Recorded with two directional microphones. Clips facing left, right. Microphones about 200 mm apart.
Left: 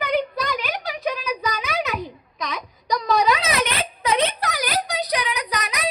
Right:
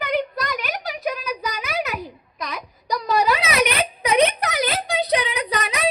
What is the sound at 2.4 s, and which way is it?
Wail, 5° right (ahead or behind).